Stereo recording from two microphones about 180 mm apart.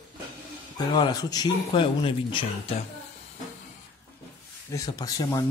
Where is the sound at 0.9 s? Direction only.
20° left (ahead or behind).